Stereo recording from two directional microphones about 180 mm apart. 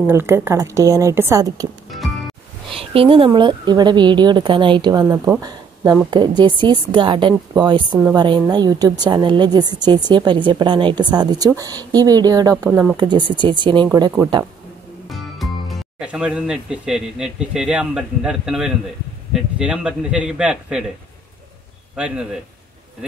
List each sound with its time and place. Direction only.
0.0 s a woman's voice: 15° right (ahead or behind)
2.7 s a sound: 30° right (ahead or behind)
3.3 s a woman's voice: 25° right (ahead or behind)
12.6 s a man's voice: 5° right (ahead or behind)
12.9 s a woman's voice: 25° right (ahead or behind)
15.0 s a man's voice: centre (ahead or behind)
21.9 s a man's voice: 5° right (ahead or behind)